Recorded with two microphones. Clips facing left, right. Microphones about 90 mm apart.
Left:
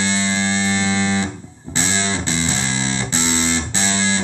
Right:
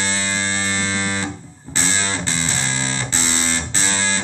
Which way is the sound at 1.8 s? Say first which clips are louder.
Left 1 dB; 20° left (ahead or behind).